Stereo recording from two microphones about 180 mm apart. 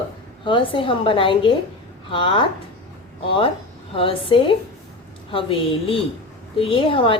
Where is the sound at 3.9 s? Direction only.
30° left (ahead or behind).